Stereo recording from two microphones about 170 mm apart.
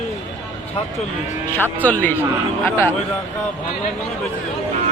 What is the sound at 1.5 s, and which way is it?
Speech, 10° left (ahead or behind).